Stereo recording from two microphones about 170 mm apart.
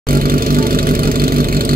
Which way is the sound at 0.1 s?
55° right (ahead or behind).